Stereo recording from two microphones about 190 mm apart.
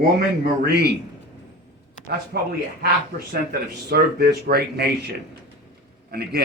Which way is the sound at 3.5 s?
50° right (ahead or behind).